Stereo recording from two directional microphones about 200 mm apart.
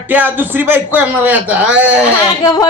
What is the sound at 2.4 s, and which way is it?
Speech, 20° left (ahead or behind).